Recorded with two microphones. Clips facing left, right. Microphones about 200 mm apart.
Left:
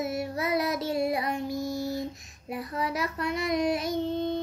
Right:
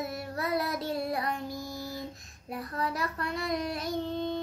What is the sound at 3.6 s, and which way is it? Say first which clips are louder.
Child singing: left 7 dB; 90° left.